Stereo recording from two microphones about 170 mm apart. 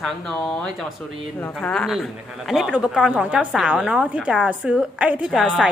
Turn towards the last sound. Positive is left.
turn(degrees=-5)  # may be behind; listen again after turning